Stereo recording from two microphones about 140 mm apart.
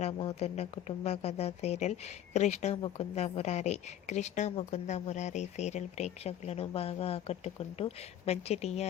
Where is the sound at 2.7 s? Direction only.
35° left (ahead or behind).